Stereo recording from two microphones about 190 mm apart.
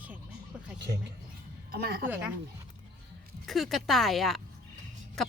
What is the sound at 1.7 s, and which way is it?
Speech, 55° right (ahead or behind).